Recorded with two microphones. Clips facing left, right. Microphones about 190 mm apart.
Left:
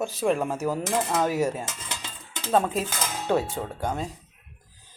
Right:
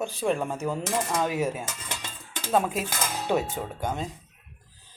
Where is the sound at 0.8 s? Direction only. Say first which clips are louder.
Left 1 dB; 20° left (ahead or behind).